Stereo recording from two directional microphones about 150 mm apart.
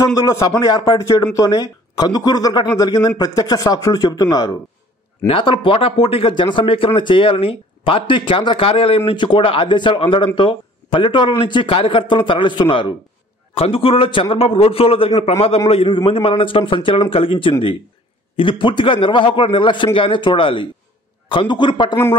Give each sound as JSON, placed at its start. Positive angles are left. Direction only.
{"t": 0.0, "sound": "speech", "side_deg": 20}
{"t": 5.2, "sound": "a man's voice", "side_deg": 35}